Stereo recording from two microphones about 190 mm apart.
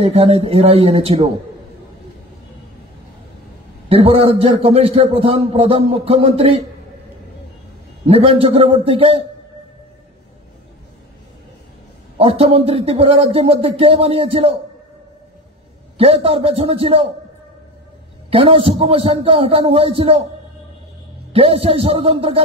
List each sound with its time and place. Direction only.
0.0 s a man's voice: 35° right (ahead or behind)
3.9 s a man's voice: 30° right (ahead or behind)
8.1 s a man's voice: 30° right (ahead or behind)
12.2 s a man's voice: 30° right (ahead or behind)
16.0 s a man's voice: 30° right (ahead or behind)
18.3 s a man's voice: 30° right (ahead or behind)
21.3 s a man's voice: 30° right (ahead or behind)